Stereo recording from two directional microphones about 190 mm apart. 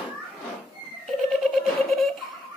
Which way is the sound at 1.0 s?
Centre (ahead or behind).